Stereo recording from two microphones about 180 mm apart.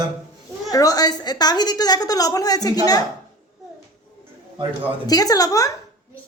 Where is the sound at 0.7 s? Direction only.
20° left (ahead or behind).